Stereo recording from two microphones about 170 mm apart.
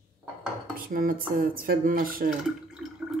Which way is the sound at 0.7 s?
55° right (ahead or behind).